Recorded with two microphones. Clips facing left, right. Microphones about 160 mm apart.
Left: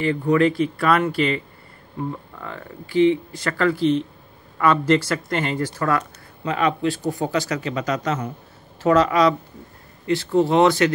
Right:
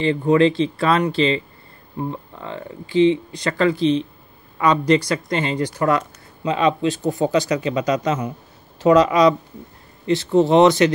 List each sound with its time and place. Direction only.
0.0 s speech: 25° right (ahead or behind)
2.4 s speech: 20° right (ahead or behind)